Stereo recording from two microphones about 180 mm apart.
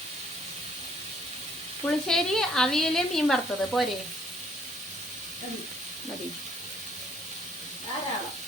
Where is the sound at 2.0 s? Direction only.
5° left (ahead or behind).